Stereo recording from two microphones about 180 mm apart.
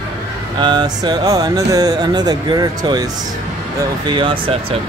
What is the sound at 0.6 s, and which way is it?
Speech, 25° right (ahead or behind).